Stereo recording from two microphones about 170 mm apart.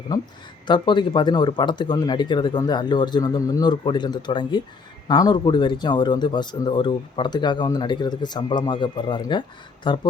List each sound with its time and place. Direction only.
0.7 s speech: 25° left (ahead or behind)